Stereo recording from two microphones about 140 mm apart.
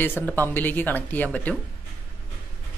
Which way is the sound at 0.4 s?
15° left (ahead or behind).